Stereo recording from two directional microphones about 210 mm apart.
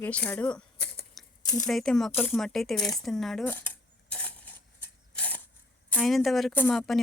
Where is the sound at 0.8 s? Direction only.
50° left (ahead or behind).